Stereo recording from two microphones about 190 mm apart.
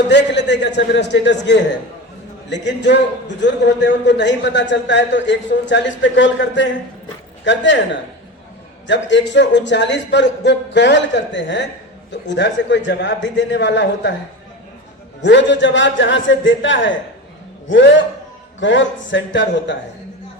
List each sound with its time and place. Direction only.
0.1 s a man's voice: 65° left (ahead or behind)
8.9 s a man's voice: 70° left (ahead or behind)
15.2 s a man's voice: 70° left (ahead or behind)